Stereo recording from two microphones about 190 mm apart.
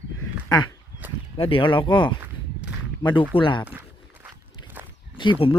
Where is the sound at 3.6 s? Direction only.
10° right (ahead or behind).